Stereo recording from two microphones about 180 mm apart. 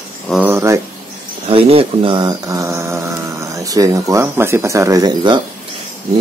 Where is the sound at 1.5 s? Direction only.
30° right (ahead or behind).